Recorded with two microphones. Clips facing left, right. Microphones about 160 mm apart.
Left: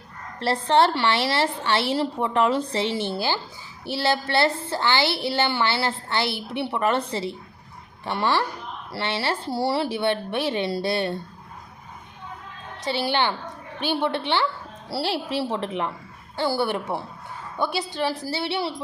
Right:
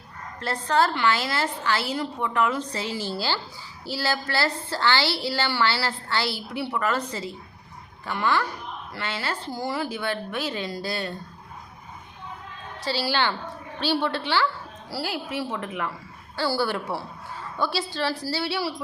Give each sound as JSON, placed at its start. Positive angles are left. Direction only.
{"t": 0.3, "sound": "a woman's voice", "side_deg": 25}
{"t": 12.8, "sound": "a woman's voice", "side_deg": 20}